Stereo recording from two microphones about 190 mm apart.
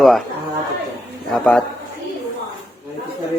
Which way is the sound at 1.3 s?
Centre (ahead or behind).